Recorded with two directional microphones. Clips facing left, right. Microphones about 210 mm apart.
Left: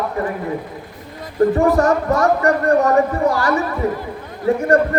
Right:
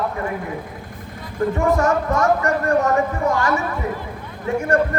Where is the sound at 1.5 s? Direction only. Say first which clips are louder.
Left 3 dB; 35° left (ahead or behind).